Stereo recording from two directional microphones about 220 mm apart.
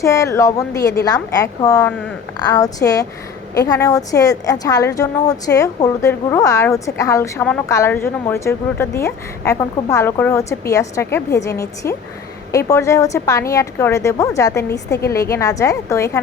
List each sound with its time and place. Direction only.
0.0 s a woman's voice: 15° left (ahead or behind)